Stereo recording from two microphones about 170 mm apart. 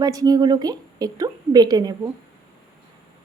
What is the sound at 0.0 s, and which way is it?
Speech, 20° right (ahead or behind).